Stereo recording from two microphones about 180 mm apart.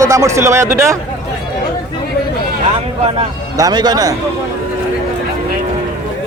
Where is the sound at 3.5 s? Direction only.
20° right (ahead or behind).